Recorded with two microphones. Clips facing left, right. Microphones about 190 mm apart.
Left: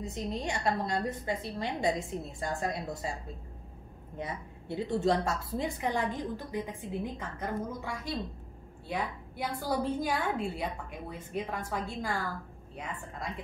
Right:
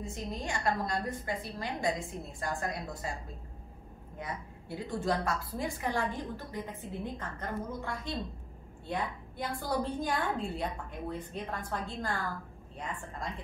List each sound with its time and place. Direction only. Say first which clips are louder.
0.0 s a woman's voice: left 3 dB; 25° left (ahead or behind)
4.2 s a woman's voice: left 2 dB; 25° left (ahead or behind)